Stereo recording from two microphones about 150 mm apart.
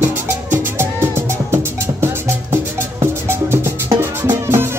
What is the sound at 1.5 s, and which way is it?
Music, 15° right (ahead or behind).